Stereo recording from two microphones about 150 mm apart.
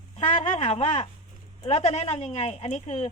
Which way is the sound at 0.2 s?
50° left (ahead or behind).